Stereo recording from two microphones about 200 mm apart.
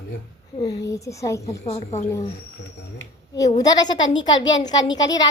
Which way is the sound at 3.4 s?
20° left (ahead or behind).